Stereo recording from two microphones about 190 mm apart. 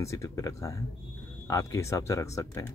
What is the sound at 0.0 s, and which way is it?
Speech, 15° left (ahead or behind).